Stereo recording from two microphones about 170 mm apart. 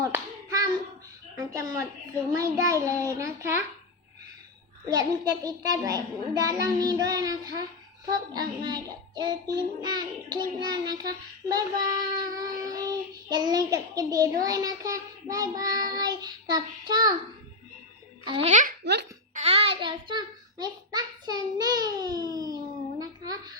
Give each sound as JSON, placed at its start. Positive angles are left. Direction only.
{"t": 0.0, "sound": "hands", "side_deg": -20}
{"t": 1.4, "sound": "child singing", "side_deg": -20}
{"t": 4.9, "sound": "child singing", "side_deg": -20}
{"t": 18.3, "sound": "a child's voice", "side_deg": -30}
{"t": 19.3, "sound": "child singing", "side_deg": -40}
{"t": 23.0, "sound": "humming", "side_deg": -20}